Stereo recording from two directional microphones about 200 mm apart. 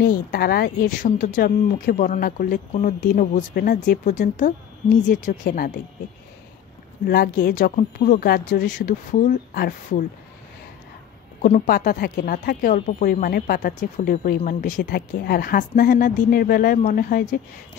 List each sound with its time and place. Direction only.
0.0 s speech: 45° left (ahead or behind)
7.1 s speech: 50° left (ahead or behind)
11.4 s speech: 45° left (ahead or behind)